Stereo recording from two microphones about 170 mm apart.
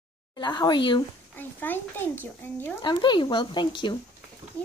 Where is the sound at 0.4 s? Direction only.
25° left (ahead or behind).